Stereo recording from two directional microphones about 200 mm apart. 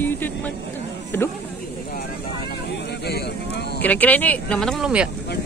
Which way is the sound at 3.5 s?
55° left (ahead or behind).